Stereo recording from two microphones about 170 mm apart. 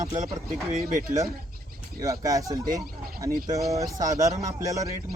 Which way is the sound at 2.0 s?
20° right (ahead or behind).